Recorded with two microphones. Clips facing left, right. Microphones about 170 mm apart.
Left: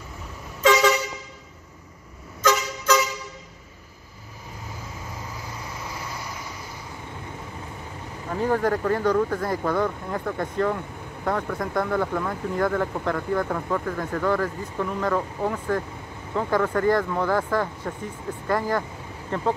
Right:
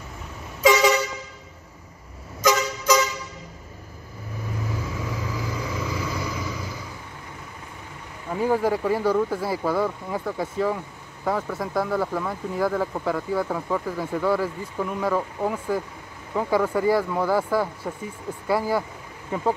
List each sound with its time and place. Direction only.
0.6 s vehicle horn: 10° right (ahead or behind)
2.9 s vehicle: 10° right (ahead or behind)
4.9 s vehicle: 90° right
8.4 s speech: 10° right (ahead or behind)